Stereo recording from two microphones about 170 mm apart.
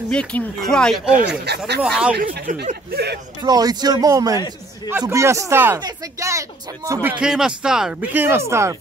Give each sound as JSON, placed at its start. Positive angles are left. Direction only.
{"t": 0.1, "sound": "speech", "side_deg": 5}
{"t": 2.1, "sound": "speech", "side_deg": -55}
{"t": 3.4, "sound": "a man's voice", "side_deg": -25}